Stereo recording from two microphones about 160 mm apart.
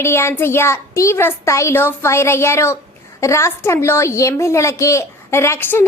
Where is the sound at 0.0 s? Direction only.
15° left (ahead or behind).